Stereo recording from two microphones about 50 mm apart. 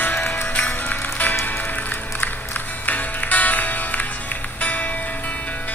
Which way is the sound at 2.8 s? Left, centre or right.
Left.